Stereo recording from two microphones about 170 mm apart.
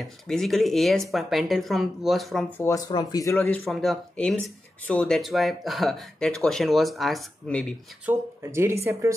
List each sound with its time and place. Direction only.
0.3 s speech: centre (ahead or behind)
2.6 s speech: 20° left (ahead or behind); by 7.6 s 5° left (ahead or behind)
8.0 s speech: 15° right (ahead or behind)